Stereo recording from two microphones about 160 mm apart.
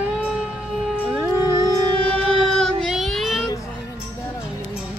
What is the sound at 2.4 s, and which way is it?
Child singing, centre (ahead or behind).